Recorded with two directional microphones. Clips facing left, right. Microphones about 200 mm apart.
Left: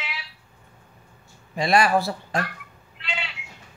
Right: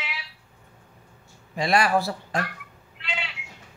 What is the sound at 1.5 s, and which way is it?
Speech, 25° left (ahead or behind).